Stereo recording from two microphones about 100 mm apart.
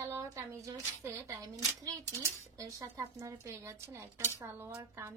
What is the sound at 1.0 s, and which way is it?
A woman's voice, 30° right (ahead or behind).